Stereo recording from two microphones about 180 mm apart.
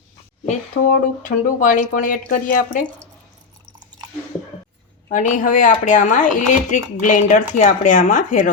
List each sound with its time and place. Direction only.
0.4 s speech: 50° left (ahead or behind)
5.0 s speech: 45° left (ahead or behind)